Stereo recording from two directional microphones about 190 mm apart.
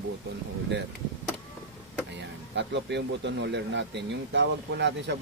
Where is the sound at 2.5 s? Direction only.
65° right (ahead or behind).